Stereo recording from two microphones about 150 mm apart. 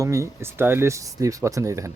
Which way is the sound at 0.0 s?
20° right (ahead or behind).